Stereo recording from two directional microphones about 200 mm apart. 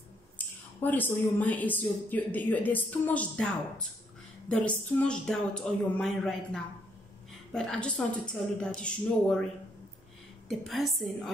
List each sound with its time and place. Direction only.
0.7 s speech: 10° left (ahead or behind)
10.5 s speech: centre (ahead or behind)